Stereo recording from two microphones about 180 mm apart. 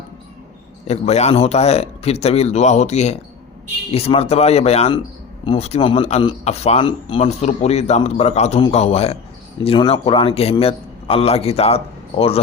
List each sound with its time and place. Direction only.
0.9 s speech: 35° left (ahead or behind)